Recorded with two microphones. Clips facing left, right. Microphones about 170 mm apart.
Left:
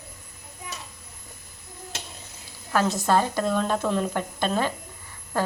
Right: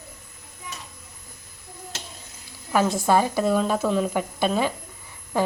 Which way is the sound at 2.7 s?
15° right (ahead or behind).